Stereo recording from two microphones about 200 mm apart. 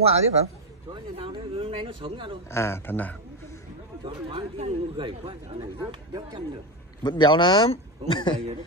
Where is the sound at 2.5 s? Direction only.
10° left (ahead or behind).